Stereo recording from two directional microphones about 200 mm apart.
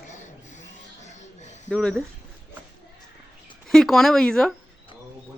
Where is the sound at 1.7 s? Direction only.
5° left (ahead or behind).